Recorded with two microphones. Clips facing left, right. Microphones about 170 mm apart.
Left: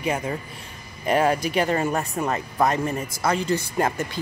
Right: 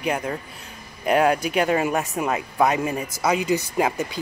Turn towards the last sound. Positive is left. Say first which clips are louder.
# right 1 dB
turn(degrees=-5)  # may be behind; listen again after turning